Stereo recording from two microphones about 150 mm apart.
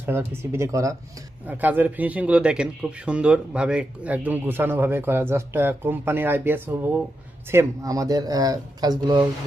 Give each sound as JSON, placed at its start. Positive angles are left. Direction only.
{"t": 0.0, "sound": "a man's voice", "side_deg": -15}